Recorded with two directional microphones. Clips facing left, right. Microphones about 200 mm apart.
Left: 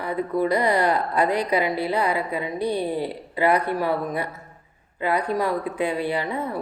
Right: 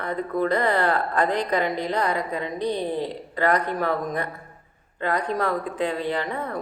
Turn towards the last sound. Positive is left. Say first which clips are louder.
# left 1 dB
turn(degrees=10)  # may be behind; listen again after turning